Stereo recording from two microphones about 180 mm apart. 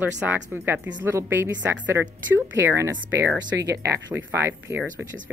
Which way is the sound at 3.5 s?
70° right (ahead or behind).